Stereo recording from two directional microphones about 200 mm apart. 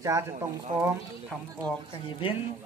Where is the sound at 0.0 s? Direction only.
15° right (ahead or behind).